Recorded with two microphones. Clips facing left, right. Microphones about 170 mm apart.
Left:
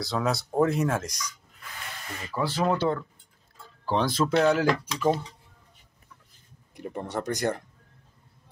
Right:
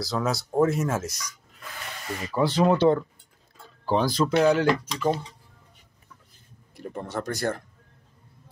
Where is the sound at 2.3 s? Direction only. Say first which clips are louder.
Right 5 dB; 20° right (ahead or behind).